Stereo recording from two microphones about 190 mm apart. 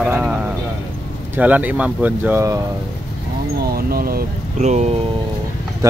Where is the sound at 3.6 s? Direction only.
50° right (ahead or behind).